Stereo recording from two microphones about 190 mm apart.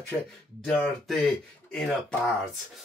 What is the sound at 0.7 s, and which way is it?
Speech, centre (ahead or behind).